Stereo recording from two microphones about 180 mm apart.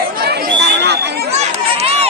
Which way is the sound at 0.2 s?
60° right (ahead or behind).